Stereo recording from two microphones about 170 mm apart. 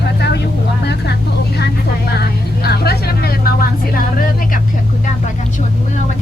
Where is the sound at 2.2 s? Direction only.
70° left (ahead or behind).